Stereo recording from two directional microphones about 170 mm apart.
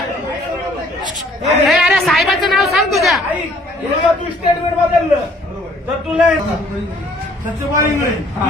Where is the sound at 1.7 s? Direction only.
Centre (ahead or behind).